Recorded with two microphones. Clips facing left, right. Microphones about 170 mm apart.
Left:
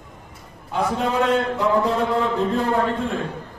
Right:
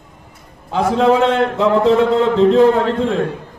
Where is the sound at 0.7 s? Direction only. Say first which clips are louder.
Right 9 dB; 85° right.